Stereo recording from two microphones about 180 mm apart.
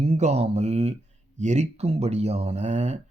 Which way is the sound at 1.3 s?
40° right (ahead or behind).